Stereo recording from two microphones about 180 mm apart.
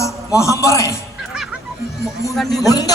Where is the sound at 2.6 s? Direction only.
20° left (ahead or behind).